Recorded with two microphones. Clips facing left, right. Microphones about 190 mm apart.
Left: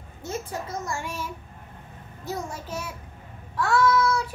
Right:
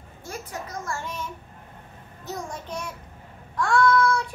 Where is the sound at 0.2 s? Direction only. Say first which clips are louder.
Left 4 dB; 25° left (ahead or behind).